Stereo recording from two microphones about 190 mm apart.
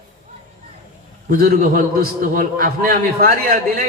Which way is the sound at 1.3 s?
50° right (ahead or behind).